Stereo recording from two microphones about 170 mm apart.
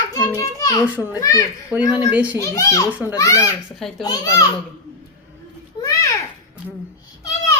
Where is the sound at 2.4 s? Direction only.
20° left (ahead or behind).